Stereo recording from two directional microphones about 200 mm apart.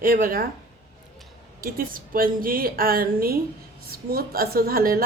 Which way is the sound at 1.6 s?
45° right (ahead or behind).